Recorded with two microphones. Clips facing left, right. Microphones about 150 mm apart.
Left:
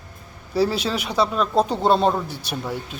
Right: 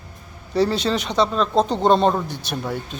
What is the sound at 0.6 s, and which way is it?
Speech, 5° left (ahead or behind).